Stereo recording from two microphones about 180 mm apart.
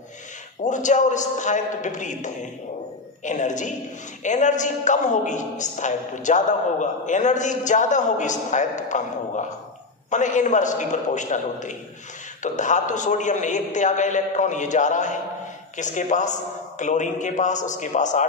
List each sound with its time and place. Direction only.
0.7 s a woman's voice: 45° left (ahead or behind)
10.0 s a woman's voice: 40° left (ahead or behind)